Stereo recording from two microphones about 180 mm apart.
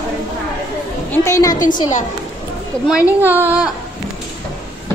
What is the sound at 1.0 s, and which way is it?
Speech, 15° left (ahead or behind).